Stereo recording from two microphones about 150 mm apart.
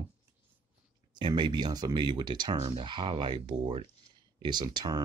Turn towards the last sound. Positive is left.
turn(degrees=-30)  # may be behind; listen again after turning